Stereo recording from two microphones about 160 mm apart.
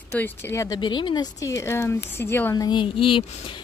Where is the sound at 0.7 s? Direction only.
30° left (ahead or behind).